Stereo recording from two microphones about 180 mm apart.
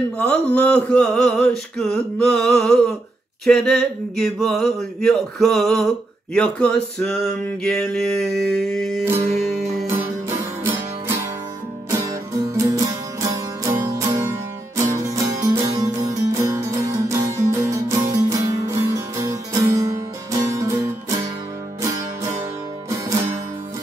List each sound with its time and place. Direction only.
0.2 s a sound: 5° left (ahead or behind)
9.0 s music: 15° right (ahead or behind)
10.6 s music: 15° right (ahead or behind)
22.8 s music: 15° right (ahead or behind)